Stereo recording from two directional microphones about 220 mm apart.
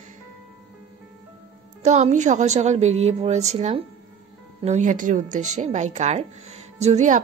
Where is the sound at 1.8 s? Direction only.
30° right (ahead or behind).